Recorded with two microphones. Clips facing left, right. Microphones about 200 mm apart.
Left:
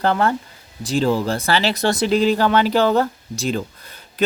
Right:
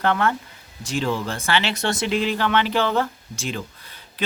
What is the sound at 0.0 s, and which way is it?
Speech, 35° left (ahead or behind).